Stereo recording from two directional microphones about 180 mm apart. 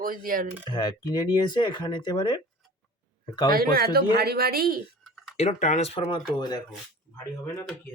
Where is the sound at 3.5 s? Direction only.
55° right (ahead or behind).